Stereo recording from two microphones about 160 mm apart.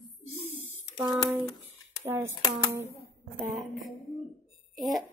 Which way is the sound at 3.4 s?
Centre (ahead or behind).